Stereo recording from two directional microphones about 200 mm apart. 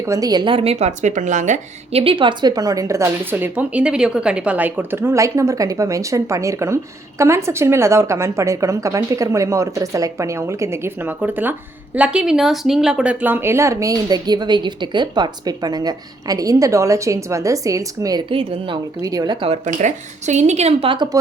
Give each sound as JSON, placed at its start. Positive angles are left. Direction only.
{"t": 0.0, "sound": "speech", "side_deg": -15}
{"t": 19.6, "sound": "speech", "side_deg": -35}